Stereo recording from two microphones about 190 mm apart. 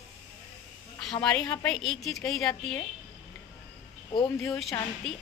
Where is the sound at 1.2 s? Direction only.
5° left (ahead or behind).